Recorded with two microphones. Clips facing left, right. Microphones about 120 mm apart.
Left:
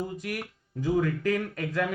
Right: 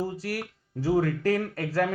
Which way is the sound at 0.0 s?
35° right (ahead or behind).